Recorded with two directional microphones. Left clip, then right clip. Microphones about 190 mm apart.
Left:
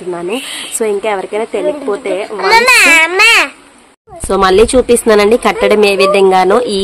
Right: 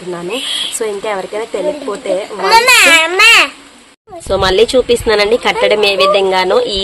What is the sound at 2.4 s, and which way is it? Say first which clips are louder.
A child's voice: left 1 dB; centre (ahead or behind).